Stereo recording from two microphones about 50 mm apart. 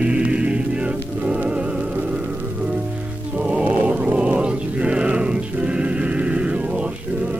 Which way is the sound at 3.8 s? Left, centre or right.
Right.